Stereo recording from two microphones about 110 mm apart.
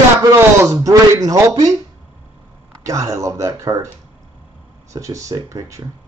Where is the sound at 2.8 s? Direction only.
30° right (ahead or behind).